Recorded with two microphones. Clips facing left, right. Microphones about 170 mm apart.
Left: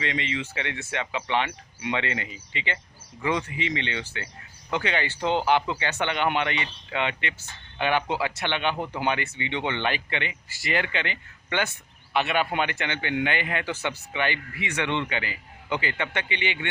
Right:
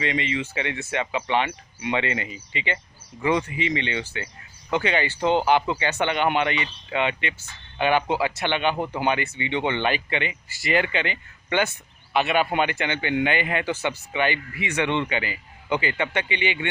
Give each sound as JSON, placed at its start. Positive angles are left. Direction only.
{"t": 0.0, "sound": "speech", "side_deg": -15}